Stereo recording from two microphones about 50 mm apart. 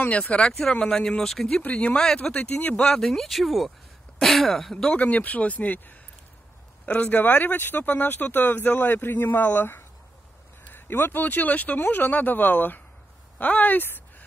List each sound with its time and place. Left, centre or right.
0.1 s speech: left
0.5 s speech: centre
1.6 s speech: left
3.0 s speech: centre
4.7 s speech: left
13.8 s a sound: left